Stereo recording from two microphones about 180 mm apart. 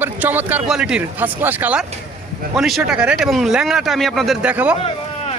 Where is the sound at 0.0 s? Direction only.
10° right (ahead or behind).